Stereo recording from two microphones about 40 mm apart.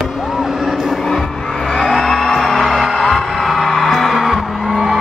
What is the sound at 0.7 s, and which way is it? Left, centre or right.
Music, centre.